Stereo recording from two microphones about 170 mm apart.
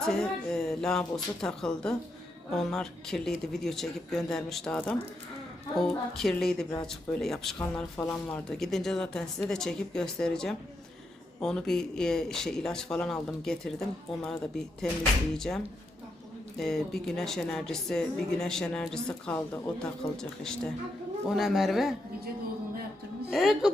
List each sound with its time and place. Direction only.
0.0 s speech: 5° left (ahead or behind)
6.1 s speech: centre (ahead or behind)
8.4 s speech: 5° left (ahead or behind)
23.3 s speech: centre (ahead or behind)